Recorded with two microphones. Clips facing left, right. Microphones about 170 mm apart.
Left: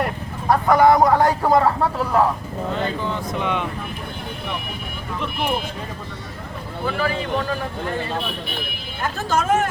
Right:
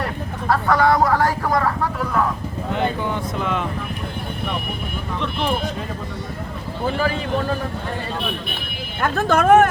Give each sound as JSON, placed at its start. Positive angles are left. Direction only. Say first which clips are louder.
{"t": 0.0, "sound": "speech", "louder": "left 1 dB", "side_deg": 20}
{"t": 2.7, "sound": "speech", "louder": "right 3 dB", "side_deg": -15}
{"t": 3.3, "sound": "speech", "louder": "left 2 dB", "side_deg": 0}
{"t": 9.0, "sound": "speech", "louder": "right 4 dB", "side_deg": -60}